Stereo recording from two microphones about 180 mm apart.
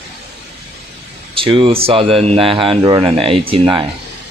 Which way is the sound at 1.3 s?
30° right (ahead or behind).